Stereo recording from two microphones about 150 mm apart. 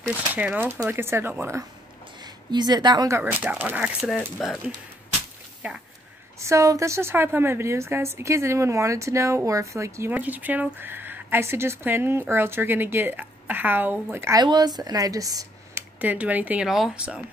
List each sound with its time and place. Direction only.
0.0 s a woman's voice: 10° right (ahead or behind)
2.2 s a woman's voice: 30° right (ahead or behind)
3.2 s a woman's voice: 10° right (ahead or behind)
6.4 s a woman's voice: 20° right (ahead or behind)
14.4 s speech: 30° right (ahead or behind)
16.0 s a woman's voice: 10° right (ahead or behind)